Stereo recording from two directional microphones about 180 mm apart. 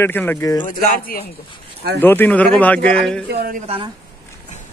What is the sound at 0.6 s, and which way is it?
Speech, 55° left (ahead or behind).